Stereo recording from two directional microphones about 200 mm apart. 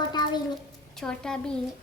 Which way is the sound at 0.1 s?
20° left (ahead or behind).